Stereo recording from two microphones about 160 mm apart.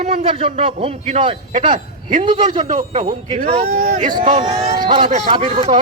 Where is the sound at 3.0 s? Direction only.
55° right (ahead or behind).